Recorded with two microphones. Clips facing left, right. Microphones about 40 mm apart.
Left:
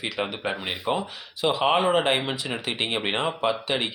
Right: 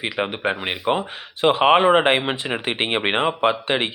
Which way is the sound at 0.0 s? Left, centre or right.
Right.